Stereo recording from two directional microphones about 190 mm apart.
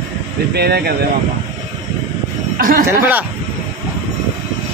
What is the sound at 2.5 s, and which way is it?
Speech, 45° right (ahead or behind).